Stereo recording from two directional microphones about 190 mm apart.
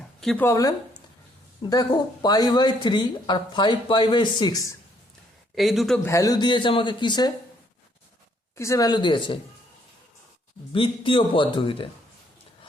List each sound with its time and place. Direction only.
0.0 s a sound: centre (ahead or behind)
0.4 s speech: 15° left (ahead or behind)
1.7 s speech: 20° left (ahead or behind)
5.5 s speech: centre (ahead or behind)
6.1 s speech: 15° left (ahead or behind)
8.5 s speech: 15° left (ahead or behind)
10.7 s speech: 25° left (ahead or behind)